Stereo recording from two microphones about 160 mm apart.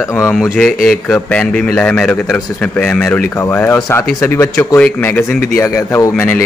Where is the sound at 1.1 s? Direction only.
5° left (ahead or behind).